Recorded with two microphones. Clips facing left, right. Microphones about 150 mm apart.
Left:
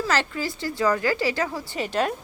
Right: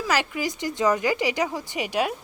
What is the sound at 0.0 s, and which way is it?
Speech, 10° right (ahead or behind).